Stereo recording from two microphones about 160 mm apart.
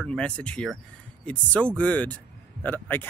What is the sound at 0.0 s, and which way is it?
Speech, 5° left (ahead or behind).